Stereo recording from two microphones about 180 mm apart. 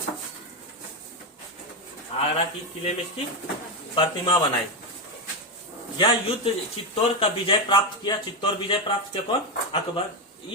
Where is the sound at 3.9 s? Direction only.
30° left (ahead or behind).